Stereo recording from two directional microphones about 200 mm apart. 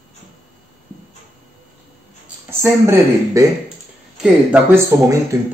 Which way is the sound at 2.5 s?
15° right (ahead or behind).